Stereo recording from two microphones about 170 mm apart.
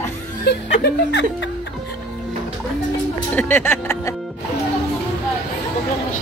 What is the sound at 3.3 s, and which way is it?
Speech, 10° left (ahead or behind).